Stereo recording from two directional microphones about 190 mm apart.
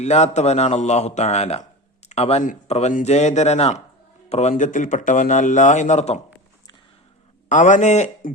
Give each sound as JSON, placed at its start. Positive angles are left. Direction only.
{"t": 0.0, "sound": "speech", "side_deg": 35}
{"t": 7.5, "sound": "speech", "side_deg": 40}